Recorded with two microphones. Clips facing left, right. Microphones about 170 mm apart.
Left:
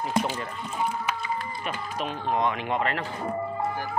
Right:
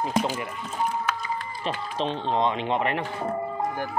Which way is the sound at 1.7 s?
25° right (ahead or behind).